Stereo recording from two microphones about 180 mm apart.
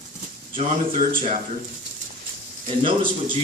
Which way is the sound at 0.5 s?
45° right (ahead or behind).